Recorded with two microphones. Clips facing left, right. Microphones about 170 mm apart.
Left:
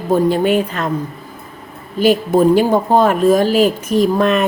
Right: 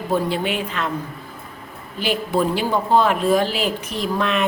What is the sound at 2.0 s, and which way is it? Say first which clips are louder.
Speech: left 9 dB; 45° left (ahead or behind).